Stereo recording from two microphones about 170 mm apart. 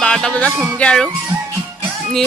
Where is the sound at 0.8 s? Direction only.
5° left (ahead or behind).